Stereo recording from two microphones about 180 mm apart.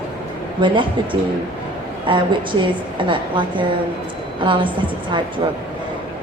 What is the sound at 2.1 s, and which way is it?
A woman's voice, 30° right (ahead or behind).